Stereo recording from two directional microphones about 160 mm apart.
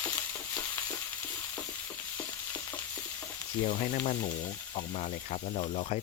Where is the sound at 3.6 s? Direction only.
55° left (ahead or behind).